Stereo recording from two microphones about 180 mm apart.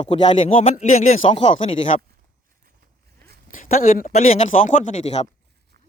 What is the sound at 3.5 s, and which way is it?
A man's voice, 50° left (ahead or behind).